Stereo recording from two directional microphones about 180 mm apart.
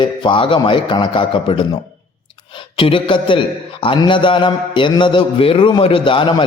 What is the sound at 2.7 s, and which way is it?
A man's voice, 30° left (ahead or behind).